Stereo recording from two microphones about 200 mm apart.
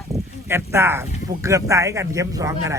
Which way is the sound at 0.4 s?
15° right (ahead or behind).